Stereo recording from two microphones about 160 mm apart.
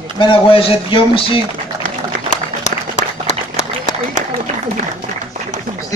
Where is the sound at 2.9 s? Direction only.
40° left (ahead or behind).